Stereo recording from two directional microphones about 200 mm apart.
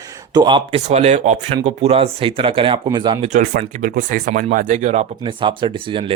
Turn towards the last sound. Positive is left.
turn(degrees=-25)  # may be behind; listen again after turning